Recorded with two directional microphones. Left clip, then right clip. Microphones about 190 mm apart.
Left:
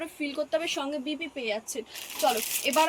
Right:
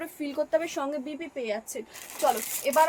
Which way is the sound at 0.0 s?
20° right (ahead or behind).